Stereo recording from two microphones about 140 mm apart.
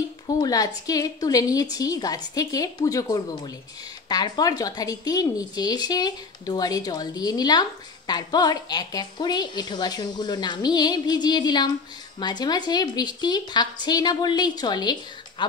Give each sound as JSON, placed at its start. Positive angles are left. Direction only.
{"t": 0.4, "sound": "a woman's voice", "side_deg": 25}